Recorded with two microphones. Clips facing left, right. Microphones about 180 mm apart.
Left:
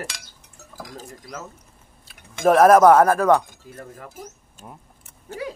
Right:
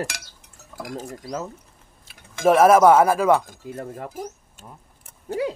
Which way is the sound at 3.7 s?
30° right (ahead or behind).